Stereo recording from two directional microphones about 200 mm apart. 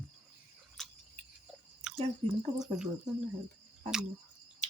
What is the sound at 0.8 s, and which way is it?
Cricket, centre (ahead or behind).